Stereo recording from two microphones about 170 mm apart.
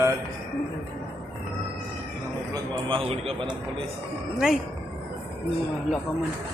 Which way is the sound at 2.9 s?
30° right (ahead or behind).